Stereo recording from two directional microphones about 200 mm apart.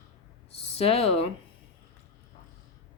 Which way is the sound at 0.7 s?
30° left (ahead or behind).